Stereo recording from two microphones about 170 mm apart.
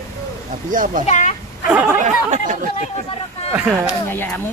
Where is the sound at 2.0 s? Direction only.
45° right (ahead or behind).